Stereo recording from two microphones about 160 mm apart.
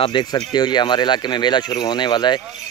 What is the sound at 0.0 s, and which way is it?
Speech, 25° left (ahead or behind).